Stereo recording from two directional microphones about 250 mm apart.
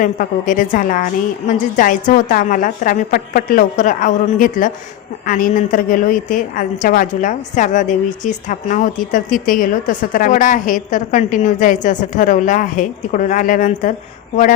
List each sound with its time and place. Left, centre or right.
0.0 s a woman's voice: left